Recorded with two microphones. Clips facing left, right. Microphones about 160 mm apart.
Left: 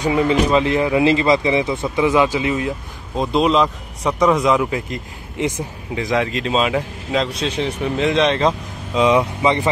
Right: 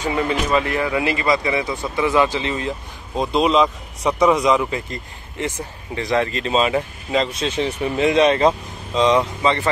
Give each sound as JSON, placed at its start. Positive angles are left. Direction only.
{"t": 0.0, "sound": "speech", "side_deg": 20}
{"t": 8.9, "sound": "speech", "side_deg": 10}